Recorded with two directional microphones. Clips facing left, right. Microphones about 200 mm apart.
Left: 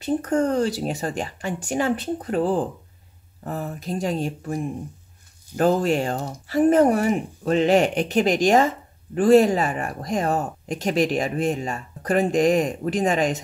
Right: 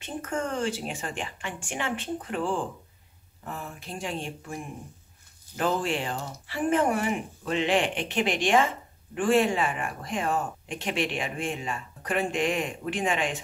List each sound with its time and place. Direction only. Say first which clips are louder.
0.0 s speech: left 10 dB; 40° left (ahead or behind)